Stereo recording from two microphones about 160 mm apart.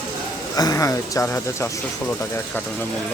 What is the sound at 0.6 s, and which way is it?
Speech, 20° left (ahead or behind).